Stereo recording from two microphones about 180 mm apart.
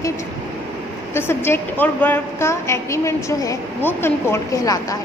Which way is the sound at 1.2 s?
15° left (ahead or behind).